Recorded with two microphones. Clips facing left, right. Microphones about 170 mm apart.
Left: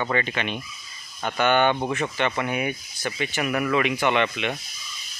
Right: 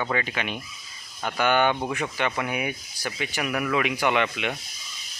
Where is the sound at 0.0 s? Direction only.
5° right (ahead or behind).